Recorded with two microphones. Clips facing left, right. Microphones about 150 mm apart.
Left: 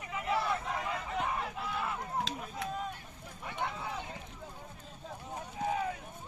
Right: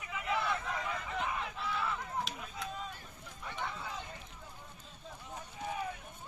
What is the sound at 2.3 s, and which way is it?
Run, 90° left.